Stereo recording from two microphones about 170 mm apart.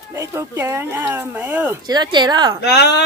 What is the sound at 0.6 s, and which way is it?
Speech, 15° right (ahead or behind).